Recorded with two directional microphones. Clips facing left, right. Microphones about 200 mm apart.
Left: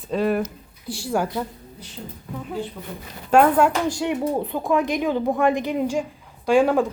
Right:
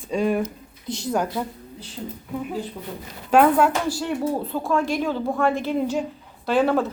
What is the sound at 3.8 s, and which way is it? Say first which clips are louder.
Speech: left 1 dB; 15° left (ahead or behind).